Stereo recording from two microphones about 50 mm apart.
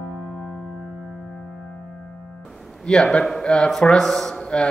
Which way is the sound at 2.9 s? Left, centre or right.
Centre.